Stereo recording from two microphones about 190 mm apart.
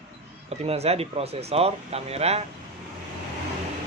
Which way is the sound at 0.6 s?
35° right (ahead or behind).